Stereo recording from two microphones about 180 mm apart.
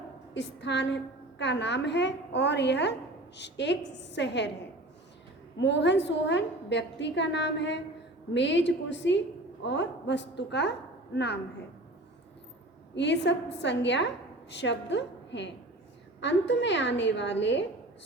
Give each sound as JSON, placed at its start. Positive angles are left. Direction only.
{"t": 0.3, "sound": "a woman's voice", "side_deg": 75}
{"t": 5.5, "sound": "a woman's voice", "side_deg": 75}
{"t": 12.9, "sound": "a woman's voice", "side_deg": 75}